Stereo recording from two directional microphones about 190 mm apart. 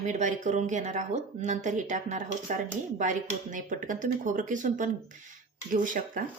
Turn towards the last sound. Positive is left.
turn(degrees=-45)  # may be behind; listen again after turning